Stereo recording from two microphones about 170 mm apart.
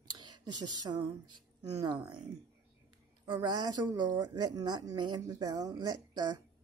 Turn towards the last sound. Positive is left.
turn(degrees=-25)  # may be behind; listen again after turning